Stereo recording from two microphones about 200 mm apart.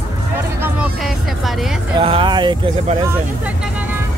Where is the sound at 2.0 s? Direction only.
25° right (ahead or behind).